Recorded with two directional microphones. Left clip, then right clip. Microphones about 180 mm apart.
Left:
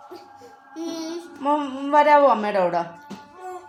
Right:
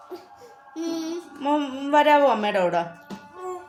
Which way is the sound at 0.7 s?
15° right (ahead or behind).